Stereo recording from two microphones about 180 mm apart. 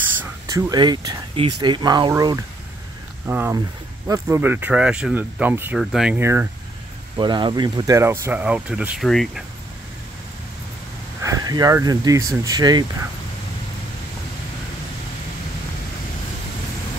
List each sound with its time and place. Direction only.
0.2 s speech: 15° right (ahead or behind)
7.2 s speech: 25° right (ahead or behind); by 9.4 s centre (ahead or behind)
11.2 s speech: 20° right (ahead or behind)